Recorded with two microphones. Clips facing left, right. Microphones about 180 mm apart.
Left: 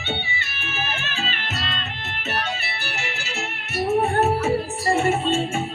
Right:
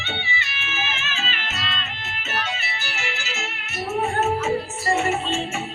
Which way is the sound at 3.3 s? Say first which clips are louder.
Left 4 dB; 35° left (ahead or behind).